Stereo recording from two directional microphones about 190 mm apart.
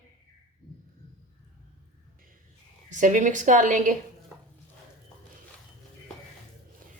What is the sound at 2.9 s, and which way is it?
A woman's voice, 40° right (ahead or behind).